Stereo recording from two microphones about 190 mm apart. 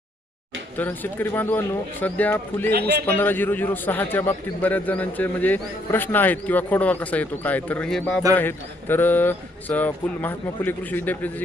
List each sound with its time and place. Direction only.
0.8 s a man's voice: 10° left (ahead or behind)
2.6 s a man's voice: 55° right (ahead or behind)
3.1 s a man's voice: 10° left (ahead or behind)